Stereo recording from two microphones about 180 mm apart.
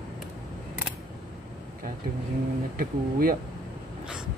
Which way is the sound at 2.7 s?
55° right (ahead or behind).